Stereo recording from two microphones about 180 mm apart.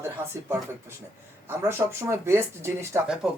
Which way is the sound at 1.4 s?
15° right (ahead or behind).